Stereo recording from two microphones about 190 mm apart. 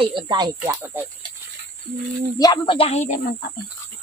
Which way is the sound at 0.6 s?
15° right (ahead or behind).